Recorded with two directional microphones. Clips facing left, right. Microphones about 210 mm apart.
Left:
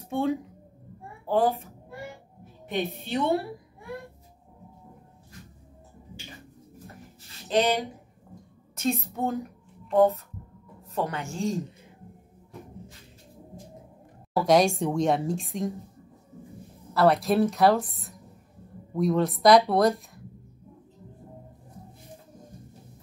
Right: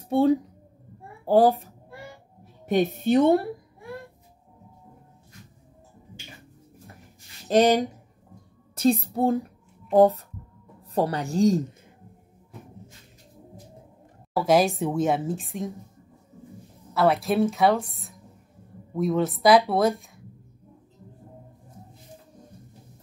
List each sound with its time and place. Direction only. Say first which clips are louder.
0.1 s a woman's voice: right 7 dB; 30° right (ahead or behind)
2.6 s a woman's voice: right 8 dB; 45° right (ahead or behind)
7.4 s a woman's voice: right 5 dB; 45° right (ahead or behind)
8.7 s a woman's voice: right 6 dB; 35° right (ahead or behind)
14.3 s a woman's voice: even; 5° right (ahead or behind)
16.9 s a woman's voice: even; centre (ahead or behind)